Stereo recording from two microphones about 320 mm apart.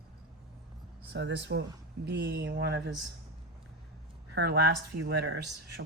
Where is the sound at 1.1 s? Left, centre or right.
Right.